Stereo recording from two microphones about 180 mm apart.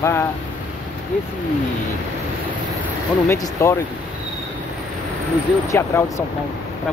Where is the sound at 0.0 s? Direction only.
15° left (ahead or behind).